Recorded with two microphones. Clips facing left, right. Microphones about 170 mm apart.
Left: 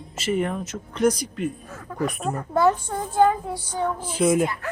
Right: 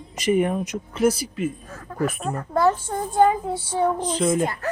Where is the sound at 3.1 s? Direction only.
15° right (ahead or behind).